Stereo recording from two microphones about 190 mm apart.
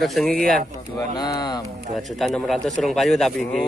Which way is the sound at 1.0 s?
20° left (ahead or behind).